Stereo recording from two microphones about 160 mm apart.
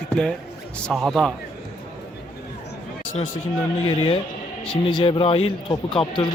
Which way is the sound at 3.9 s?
30° left (ahead or behind).